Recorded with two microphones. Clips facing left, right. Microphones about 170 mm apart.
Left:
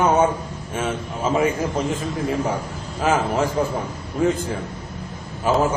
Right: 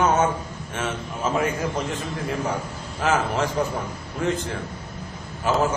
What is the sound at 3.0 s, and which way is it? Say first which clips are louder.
Speech: left 3 dB; 10° left (ahead or behind).